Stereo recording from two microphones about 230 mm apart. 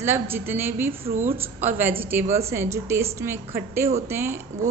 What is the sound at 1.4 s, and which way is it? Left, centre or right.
A woman's voice, centre.